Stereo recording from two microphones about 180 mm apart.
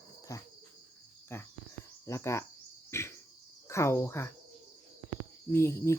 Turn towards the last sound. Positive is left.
turn(degrees=15)  # may be behind; listen again after turning